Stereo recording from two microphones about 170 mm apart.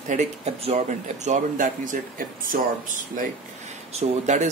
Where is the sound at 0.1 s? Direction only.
40° right (ahead or behind).